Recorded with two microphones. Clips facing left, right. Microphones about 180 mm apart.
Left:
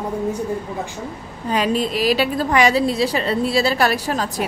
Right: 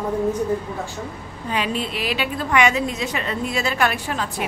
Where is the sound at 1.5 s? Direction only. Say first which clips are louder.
Left 5 dB; 40° left (ahead or behind).